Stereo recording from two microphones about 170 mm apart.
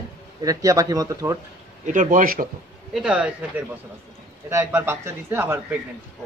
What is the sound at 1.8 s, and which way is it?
Speech, 50° right (ahead or behind).